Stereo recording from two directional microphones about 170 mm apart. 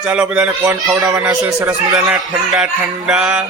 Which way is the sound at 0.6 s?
20° right (ahead or behind).